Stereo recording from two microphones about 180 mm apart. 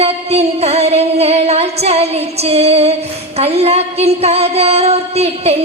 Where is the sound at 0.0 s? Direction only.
35° right (ahead or behind).